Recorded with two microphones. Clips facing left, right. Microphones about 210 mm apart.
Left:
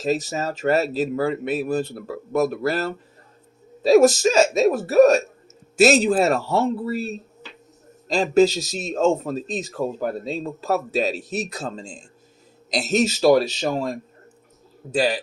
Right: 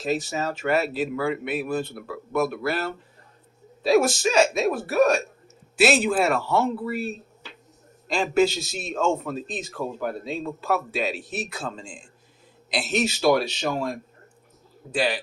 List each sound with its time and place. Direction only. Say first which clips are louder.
0.0 s a man's voice: left 3 dB; 40° left (ahead or behind)
14.9 s a man's voice: left 4 dB; 40° left (ahead or behind)